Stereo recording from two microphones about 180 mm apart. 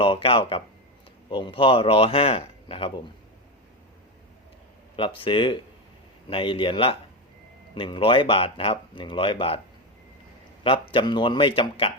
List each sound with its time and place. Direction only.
0.0 s speech: 30° left (ahead or behind)
4.9 s speech: 30° left (ahead or behind)
10.6 s speech: 30° left (ahead or behind)